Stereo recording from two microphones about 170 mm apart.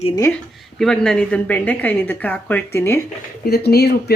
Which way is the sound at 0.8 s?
5° left (ahead or behind).